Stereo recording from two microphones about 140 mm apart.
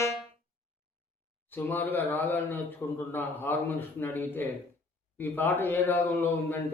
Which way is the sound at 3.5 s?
15° left (ahead or behind).